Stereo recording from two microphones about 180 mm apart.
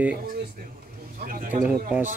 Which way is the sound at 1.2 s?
50° right (ahead or behind).